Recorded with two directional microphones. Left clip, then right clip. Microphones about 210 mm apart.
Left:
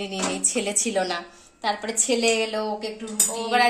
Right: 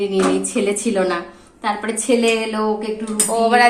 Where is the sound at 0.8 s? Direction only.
35° left (ahead or behind).